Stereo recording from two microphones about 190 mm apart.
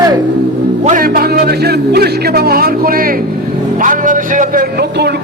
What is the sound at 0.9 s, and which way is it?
Speech, 45° right (ahead or behind).